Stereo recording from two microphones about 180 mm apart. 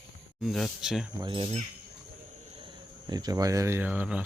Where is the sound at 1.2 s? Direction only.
25° right (ahead or behind).